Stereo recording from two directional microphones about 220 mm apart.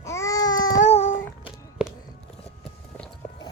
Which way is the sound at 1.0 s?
10° left (ahead or behind).